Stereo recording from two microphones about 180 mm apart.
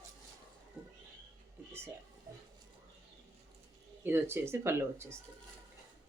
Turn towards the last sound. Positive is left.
turn(degrees=-15)  # may be behind; listen again after turning